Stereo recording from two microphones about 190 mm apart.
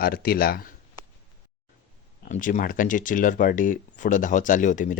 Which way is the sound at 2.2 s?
45° left (ahead or behind).